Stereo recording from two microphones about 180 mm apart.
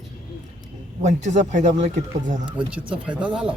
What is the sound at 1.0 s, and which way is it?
Speech, 40° right (ahead or behind).